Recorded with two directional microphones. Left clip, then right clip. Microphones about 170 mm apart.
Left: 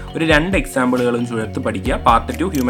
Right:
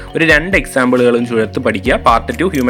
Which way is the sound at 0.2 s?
20° right (ahead or behind).